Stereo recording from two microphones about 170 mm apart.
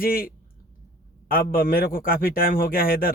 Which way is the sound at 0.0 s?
60° left (ahead or behind).